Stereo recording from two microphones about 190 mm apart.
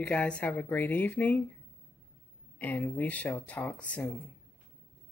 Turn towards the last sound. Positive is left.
turn(degrees=5)  # may be behind; listen again after turning